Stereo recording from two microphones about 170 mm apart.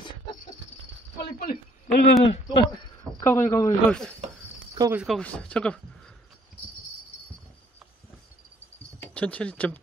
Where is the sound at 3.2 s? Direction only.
15° left (ahead or behind).